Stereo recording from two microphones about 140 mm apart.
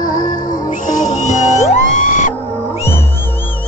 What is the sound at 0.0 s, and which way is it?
Music, 75° left (ahead or behind).